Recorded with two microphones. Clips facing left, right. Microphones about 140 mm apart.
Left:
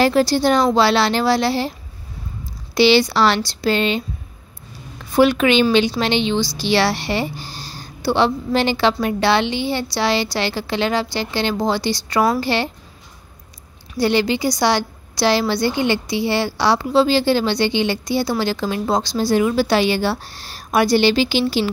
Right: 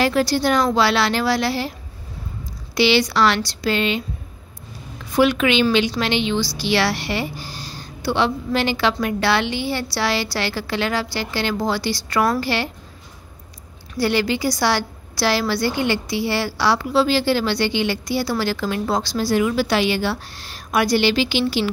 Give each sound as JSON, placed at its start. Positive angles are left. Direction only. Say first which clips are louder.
{"t": 0.0, "sound": "a woman's voice", "louder": "left 3 dB", "side_deg": 30}
{"t": 2.7, "sound": "a woman's voice", "louder": "left 3 dB", "side_deg": 30}
{"t": 5.1, "sound": "a woman's voice", "louder": "left 3 dB", "side_deg": 35}
{"t": 13.9, "sound": "a woman's voice", "louder": "left 2 dB", "side_deg": 20}